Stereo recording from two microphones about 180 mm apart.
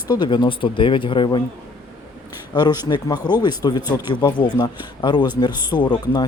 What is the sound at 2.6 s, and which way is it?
Speech, 25° left (ahead or behind).